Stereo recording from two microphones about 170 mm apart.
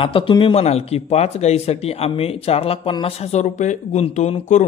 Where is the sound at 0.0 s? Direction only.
30° left (ahead or behind).